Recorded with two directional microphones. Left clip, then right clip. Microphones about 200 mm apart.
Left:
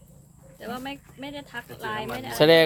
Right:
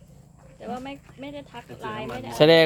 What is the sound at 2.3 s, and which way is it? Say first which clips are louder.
Speech: right 1 dB; 15° right (ahead or behind).